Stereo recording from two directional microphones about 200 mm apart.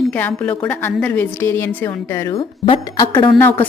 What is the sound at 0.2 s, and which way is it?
A woman's voice, 10° left (ahead or behind).